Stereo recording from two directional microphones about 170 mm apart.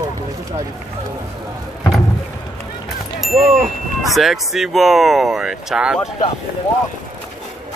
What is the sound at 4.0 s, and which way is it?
Speech, centre (ahead or behind).